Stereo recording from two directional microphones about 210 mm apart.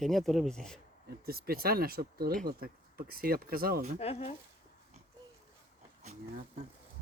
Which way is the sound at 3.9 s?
30° left (ahead or behind).